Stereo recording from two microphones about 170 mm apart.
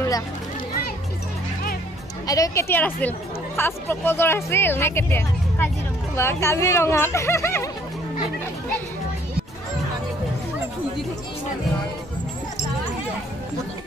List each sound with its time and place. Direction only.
2.2 s speech: 20° left (ahead or behind)